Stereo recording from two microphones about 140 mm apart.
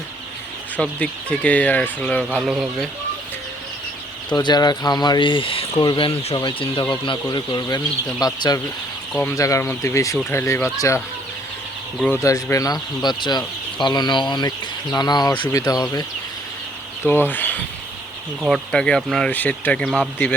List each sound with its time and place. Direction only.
0.8 s speech: 10° left (ahead or behind)
2.3 s speech: 5° right (ahead or behind)
4.3 s speech: 30° left (ahead or behind)
12.0 s speech: 20° left (ahead or behind)
17.0 s rub: 15° left (ahead or behind)
18.4 s speech: centre (ahead or behind)